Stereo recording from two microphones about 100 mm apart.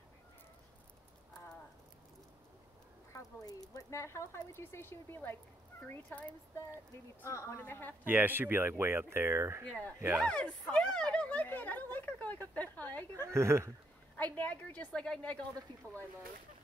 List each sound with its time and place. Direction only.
3.1 s a sound: 35° left (ahead or behind)
3.7 s a woman's voice: 30° left (ahead or behind)
6.7 s speech: 25° left (ahead or behind)
8.0 s speech: 20° right (ahead or behind)
9.7 s a woman's voice: 10° left (ahead or behind)
9.9 s speech: 25° right (ahead or behind)
10.2 s speech: 10° left (ahead or behind)
13.1 s speech: 30° right (ahead or behind)
14.1 s a woman's voice: 15° left (ahead or behind)